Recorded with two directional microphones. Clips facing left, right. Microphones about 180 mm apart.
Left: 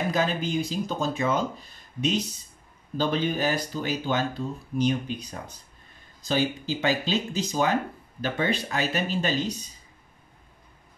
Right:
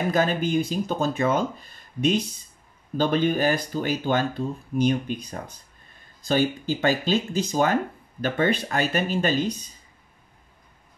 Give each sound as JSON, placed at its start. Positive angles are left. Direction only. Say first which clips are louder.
{"t": 0.1, "sound": "speech", "louder": "right 4 dB", "side_deg": -55}